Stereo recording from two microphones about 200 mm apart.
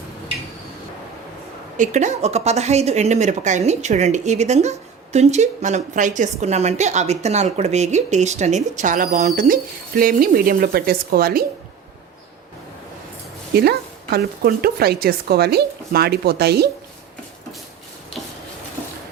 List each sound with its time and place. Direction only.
1.7 s speech: 40° right (ahead or behind)
13.5 s speech: 50° right (ahead or behind)